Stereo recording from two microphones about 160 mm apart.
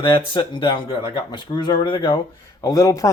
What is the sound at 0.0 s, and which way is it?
Speech, 30° left (ahead or behind).